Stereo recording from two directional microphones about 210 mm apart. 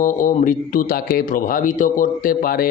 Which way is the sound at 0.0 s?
40° left (ahead or behind).